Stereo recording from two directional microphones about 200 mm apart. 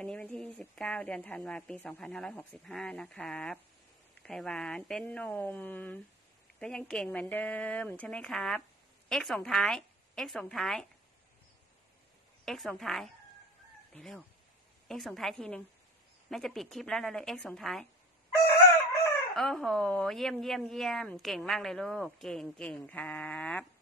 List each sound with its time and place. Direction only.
0.0 s speech: 5° left (ahead or behind)
12.4 s speech: centre (ahead or behind)
18.5 s chicken: 15° left (ahead or behind)
19.3 s speech: centre (ahead or behind)